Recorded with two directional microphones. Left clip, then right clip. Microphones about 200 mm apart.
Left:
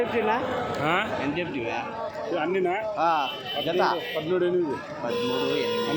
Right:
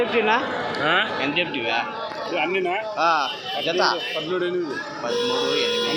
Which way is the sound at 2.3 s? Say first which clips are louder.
Right 3 dB; 40° left (ahead or behind).